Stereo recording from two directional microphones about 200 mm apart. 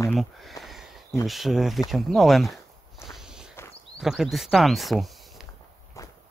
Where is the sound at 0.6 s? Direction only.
Centre (ahead or behind).